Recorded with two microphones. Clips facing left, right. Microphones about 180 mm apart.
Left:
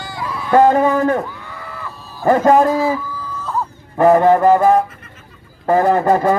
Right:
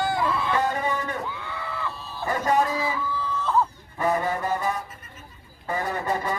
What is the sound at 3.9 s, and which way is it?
A man's voice, 55° left (ahead or behind).